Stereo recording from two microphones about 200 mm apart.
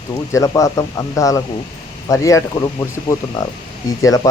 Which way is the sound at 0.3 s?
15° left (ahead or behind).